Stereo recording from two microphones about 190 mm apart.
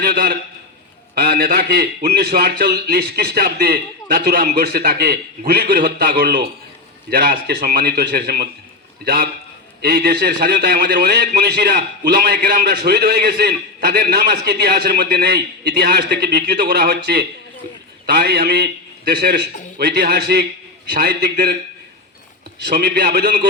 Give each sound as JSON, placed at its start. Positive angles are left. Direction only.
{"t": 0.0, "sound": "a man's voice", "side_deg": -55}
{"t": 22.6, "sound": "a man's voice", "side_deg": -60}